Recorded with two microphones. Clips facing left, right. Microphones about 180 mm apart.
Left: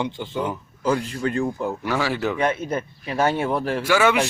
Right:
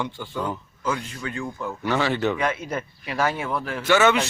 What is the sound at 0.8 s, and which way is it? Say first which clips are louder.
Speech: left 6 dB; 40° left (ahead or behind).